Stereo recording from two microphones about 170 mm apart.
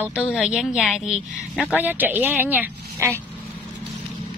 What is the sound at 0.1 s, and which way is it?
A woman's voice, 5° right (ahead or behind).